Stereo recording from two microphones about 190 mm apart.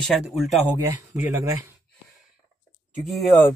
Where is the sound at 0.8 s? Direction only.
10° right (ahead or behind).